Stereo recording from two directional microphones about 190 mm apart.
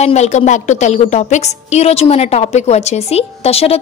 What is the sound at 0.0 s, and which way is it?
A woman's voice, 35° left (ahead or behind).